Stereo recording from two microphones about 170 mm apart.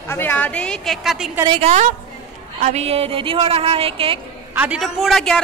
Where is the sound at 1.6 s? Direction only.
45° right (ahead or behind).